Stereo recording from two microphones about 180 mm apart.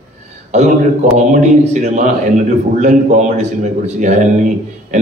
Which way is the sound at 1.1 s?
40° right (ahead or behind).